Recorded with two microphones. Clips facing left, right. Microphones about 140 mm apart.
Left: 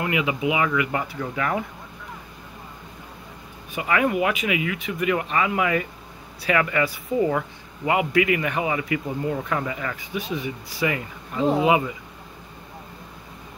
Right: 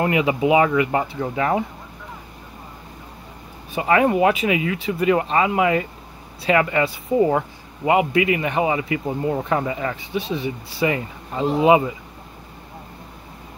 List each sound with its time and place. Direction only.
0.0 s speech: 35° right (ahead or behind)
3.7 s speech: 30° right (ahead or behind)